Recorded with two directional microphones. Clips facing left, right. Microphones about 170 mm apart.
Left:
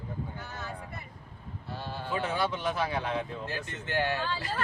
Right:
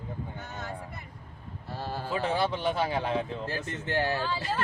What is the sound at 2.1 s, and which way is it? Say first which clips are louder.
A man's voice: right 2 dB; 30° right (ahead or behind).